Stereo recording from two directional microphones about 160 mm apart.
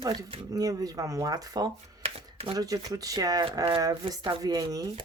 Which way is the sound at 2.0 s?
35° right (ahead or behind).